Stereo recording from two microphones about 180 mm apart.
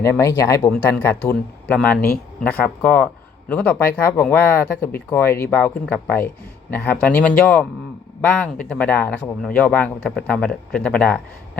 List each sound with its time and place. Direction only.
0.0 s speech: 15° left (ahead or behind)